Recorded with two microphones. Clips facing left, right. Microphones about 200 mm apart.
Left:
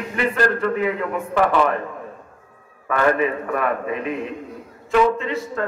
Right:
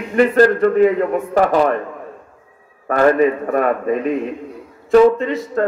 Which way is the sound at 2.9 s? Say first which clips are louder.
Right 6 dB; 40° right (ahead or behind).